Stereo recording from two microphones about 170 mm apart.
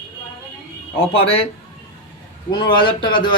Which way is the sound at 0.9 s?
35° left (ahead or behind).